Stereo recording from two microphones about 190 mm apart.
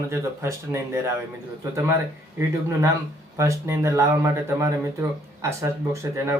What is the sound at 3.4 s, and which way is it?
Speech, 15° right (ahead or behind).